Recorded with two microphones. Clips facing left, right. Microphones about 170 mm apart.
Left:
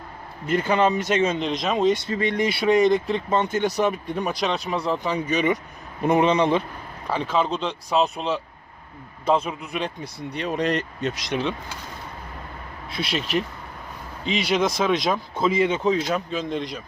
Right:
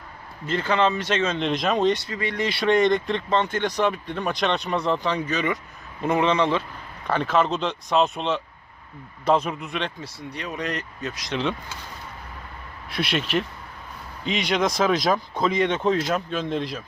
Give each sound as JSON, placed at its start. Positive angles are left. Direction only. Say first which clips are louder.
{"t": 0.4, "sound": "speech", "louder": "left 2 dB", "side_deg": 15}
{"t": 1.5, "sound": "speech", "louder": "even", "side_deg": 0}
{"t": 2.0, "sound": "speech", "louder": "left 4 dB", "side_deg": 25}
{"t": 7.1, "sound": "speech", "louder": "right 1 dB", "side_deg": 0}
{"t": 10.6, "sound": "speech", "louder": "left 6 dB", "side_deg": 30}
{"t": 13.1, "sound": "speech", "louder": "even", "side_deg": 0}
{"t": 14.4, "sound": "speech", "louder": "even", "side_deg": 5}